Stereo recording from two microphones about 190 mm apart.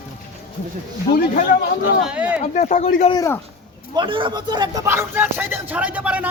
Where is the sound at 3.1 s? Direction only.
15° left (ahead or behind).